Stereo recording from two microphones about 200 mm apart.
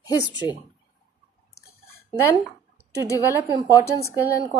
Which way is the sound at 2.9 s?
15° left (ahead or behind).